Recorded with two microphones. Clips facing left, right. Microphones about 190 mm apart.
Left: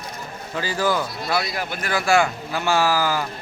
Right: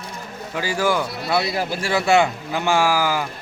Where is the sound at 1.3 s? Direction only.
30° right (ahead or behind).